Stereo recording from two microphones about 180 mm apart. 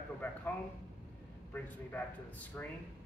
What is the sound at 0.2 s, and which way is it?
Speech, 10° left (ahead or behind).